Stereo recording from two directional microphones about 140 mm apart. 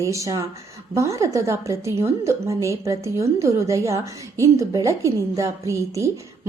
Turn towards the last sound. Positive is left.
turn(degrees=-20)  # may be behind; listen again after turning